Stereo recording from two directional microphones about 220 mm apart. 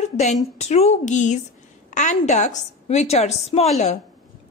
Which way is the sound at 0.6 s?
30° left (ahead or behind).